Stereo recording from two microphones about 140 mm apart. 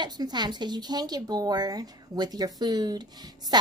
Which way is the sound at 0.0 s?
30° right (ahead or behind).